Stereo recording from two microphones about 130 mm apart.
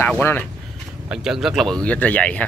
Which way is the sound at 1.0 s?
5° right (ahead or behind).